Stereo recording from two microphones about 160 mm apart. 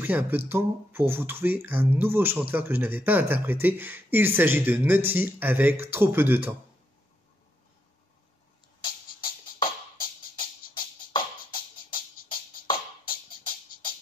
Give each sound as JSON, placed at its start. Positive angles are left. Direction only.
{"t": 0.0, "sound": "speech", "side_deg": -10}
{"t": 8.8, "sound": "music", "side_deg": 30}